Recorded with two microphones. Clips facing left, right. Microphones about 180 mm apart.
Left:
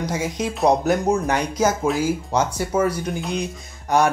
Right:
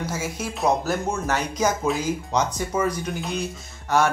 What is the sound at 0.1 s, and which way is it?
Speech, 15° left (ahead or behind).